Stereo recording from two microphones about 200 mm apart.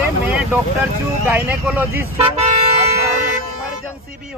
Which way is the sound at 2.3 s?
30° right (ahead or behind).